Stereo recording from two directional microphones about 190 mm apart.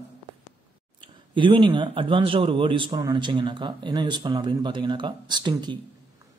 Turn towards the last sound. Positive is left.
turn(degrees=-25)  # may be behind; listen again after turning